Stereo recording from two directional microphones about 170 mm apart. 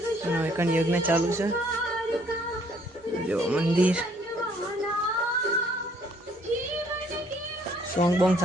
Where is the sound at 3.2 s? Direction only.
5° right (ahead or behind).